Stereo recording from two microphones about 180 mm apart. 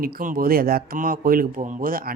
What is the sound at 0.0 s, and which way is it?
Speech, 50° right (ahead or behind).